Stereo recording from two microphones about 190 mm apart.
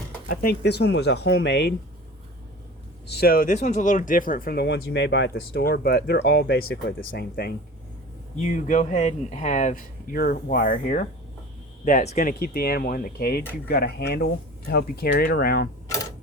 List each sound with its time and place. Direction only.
0.3 s speech: 55° left (ahead or behind)
3.1 s speech: 55° left (ahead or behind)
8.4 s speech: 40° left (ahead or behind)